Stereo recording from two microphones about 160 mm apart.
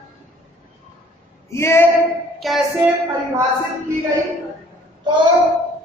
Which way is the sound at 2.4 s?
Centre (ahead or behind).